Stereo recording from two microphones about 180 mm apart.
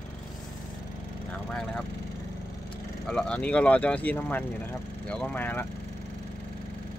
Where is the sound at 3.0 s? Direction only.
5° left (ahead or behind).